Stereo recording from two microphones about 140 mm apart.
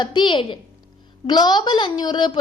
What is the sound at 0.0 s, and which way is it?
A woman's voice, 35° left (ahead or behind).